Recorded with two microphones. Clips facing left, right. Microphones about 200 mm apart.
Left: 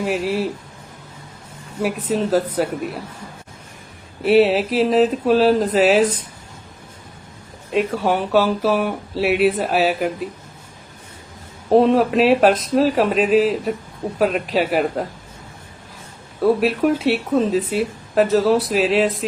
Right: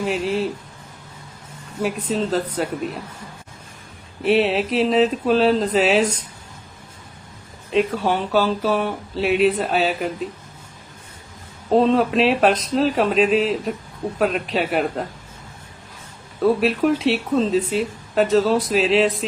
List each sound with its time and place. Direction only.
0.0 s speech: 5° left (ahead or behind)
1.8 s speech: 5° left (ahead or behind)
4.2 s speech: centre (ahead or behind)
7.7 s speech: 5° left (ahead or behind)
11.7 s speech: 15° left (ahead or behind)
11.9 s speech: centre (ahead or behind)
16.6 s speech: centre (ahead or behind)